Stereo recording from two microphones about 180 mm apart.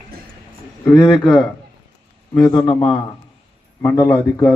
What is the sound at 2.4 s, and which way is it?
A man's voice, 20° left (ahead or behind).